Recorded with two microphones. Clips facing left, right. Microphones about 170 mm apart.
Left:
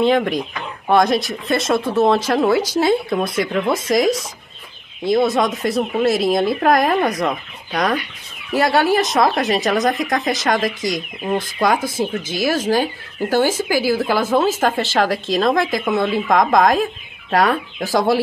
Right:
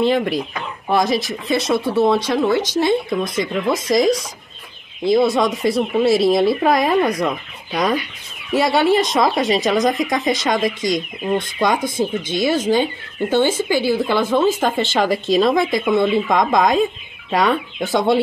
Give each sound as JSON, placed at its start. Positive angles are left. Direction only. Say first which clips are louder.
{"t": 0.0, "sound": "speech", "louder": "left 1 dB", "side_deg": 0}
{"t": 3.3, "sound": "speech", "louder": "left 1 dB", "side_deg": 25}
{"t": 5.0, "sound": "speech", "louder": "right 1 dB", "side_deg": 0}